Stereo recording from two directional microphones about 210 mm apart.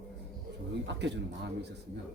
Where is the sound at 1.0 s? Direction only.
55° right (ahead or behind).